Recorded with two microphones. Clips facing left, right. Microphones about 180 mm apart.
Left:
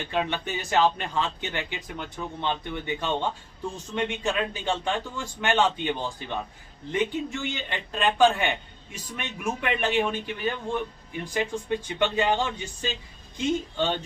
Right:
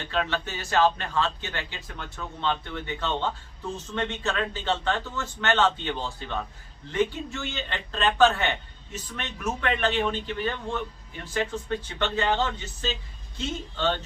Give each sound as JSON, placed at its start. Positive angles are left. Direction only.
{"t": 0.0, "sound": "a man's voice", "side_deg": 15}